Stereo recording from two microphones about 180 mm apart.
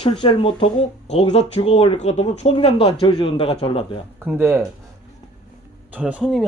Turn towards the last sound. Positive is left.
turn(degrees=0)  # may be behind; listen again after turning